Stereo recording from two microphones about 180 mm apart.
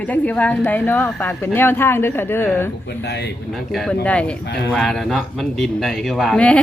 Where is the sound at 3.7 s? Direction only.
Centre (ahead or behind).